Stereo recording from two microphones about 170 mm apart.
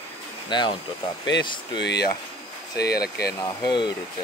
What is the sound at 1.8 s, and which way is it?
Speech, 90° left.